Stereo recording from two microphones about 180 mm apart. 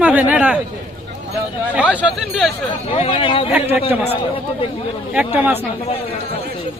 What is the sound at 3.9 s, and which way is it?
Speech, 5° right (ahead or behind).